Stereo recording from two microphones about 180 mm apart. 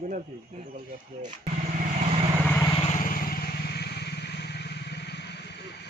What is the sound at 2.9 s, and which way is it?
Vehicle, 50° left (ahead or behind).